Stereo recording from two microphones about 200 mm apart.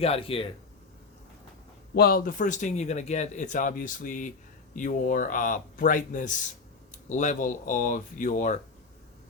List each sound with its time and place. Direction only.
0.0 s speech: 30° left (ahead or behind)
2.0 s speech: 50° left (ahead or behind)